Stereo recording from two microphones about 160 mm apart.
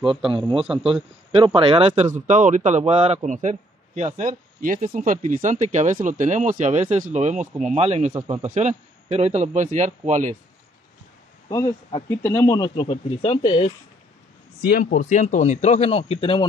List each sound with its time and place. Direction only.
0.3 s a man's voice: 30° right (ahead or behind)
2.1 s a man's voice: 50° right (ahead or behind)
11.4 s speech: 25° left (ahead or behind)
14.6 s a man's voice: 60° left (ahead or behind); by 16.4 s 35° left (ahead or behind)